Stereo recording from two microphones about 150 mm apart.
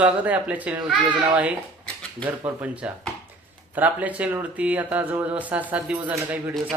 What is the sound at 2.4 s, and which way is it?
Speech, 10° right (ahead or behind).